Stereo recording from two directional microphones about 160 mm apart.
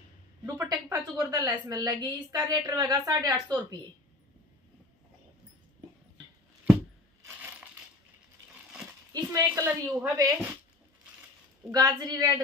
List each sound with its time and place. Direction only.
0.7 s a woman's voice: 20° right (ahead or behind)
9.1 s a woman's voice: 20° right (ahead or behind)
11.7 s a woman's voice: 20° right (ahead or behind)